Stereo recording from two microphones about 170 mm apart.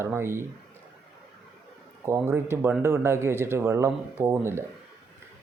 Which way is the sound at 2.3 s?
15° right (ahead or behind).